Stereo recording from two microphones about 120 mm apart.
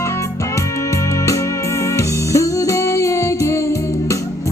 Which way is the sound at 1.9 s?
25° left (ahead or behind).